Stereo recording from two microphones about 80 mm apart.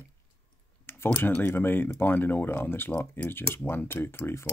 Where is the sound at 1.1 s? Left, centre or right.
Left.